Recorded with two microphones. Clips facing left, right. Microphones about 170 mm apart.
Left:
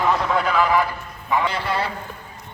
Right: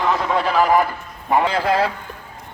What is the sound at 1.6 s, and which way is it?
Speech, 90° right.